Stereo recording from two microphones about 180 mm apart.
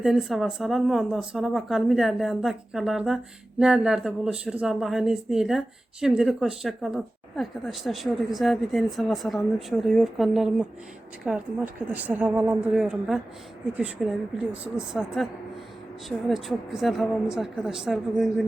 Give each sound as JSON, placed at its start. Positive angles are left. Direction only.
{"t": 0.0, "sound": "a woman's voice", "side_deg": 0}